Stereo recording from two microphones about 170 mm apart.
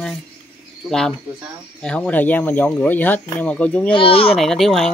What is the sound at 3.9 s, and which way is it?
Speech, 30° left (ahead or behind).